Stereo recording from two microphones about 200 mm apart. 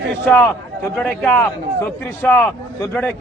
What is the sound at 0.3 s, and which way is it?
A man's voice, 10° left (ahead or behind).